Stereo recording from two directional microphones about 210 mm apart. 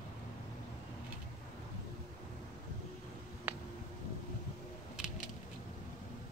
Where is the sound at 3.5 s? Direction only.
10° right (ahead or behind).